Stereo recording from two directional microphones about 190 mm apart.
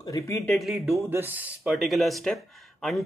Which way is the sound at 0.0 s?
15° left (ahead or behind).